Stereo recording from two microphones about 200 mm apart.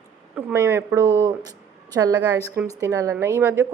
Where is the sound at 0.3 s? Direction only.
10° right (ahead or behind).